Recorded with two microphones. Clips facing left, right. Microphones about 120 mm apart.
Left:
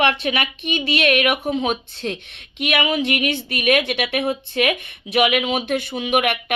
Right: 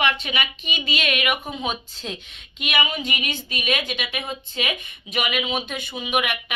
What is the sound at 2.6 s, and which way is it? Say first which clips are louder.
Speech: left 6 dB; 75° left (ahead or behind).